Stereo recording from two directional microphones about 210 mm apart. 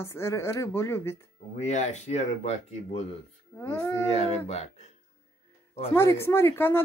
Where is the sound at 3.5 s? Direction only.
10° left (ahead or behind).